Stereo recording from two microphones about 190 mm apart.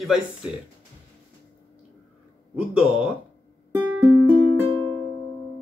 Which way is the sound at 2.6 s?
5° right (ahead or behind).